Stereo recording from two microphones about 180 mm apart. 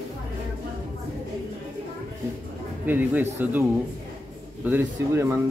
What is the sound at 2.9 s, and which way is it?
Speech, 10° right (ahead or behind).